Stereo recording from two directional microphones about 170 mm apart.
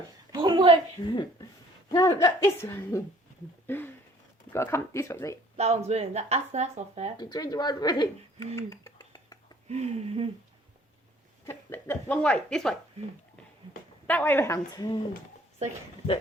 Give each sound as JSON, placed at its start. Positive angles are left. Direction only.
{"t": 0.3, "sound": "a sound", "side_deg": -25}
{"t": 1.0, "sound": "speech", "side_deg": 25}
{"t": 5.5, "sound": "speech", "side_deg": -40}
{"t": 7.2, "sound": "speech", "side_deg": 25}
{"t": 8.5, "sound": "a sound", "side_deg": 15}
{"t": 9.6, "sound": "speech", "side_deg": -40}
{"t": 11.4, "sound": "speech", "side_deg": 15}
{"t": 14.1, "sound": "speech", "side_deg": 10}